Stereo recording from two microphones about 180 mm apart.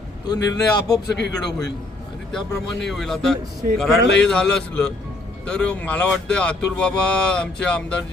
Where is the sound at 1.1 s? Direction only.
75° left (ahead or behind).